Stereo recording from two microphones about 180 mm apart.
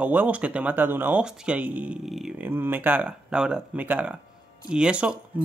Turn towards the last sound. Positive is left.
turn(degrees=-5)  # may be behind; listen again after turning